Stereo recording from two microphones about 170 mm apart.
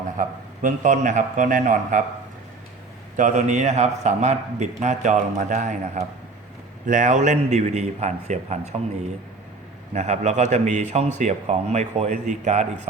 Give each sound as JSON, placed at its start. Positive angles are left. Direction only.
{"t": 0.2, "sound": "a man's voice", "side_deg": -50}
{"t": 3.2, "sound": "a man's voice", "side_deg": -45}
{"t": 9.9, "sound": "a man's voice", "side_deg": -40}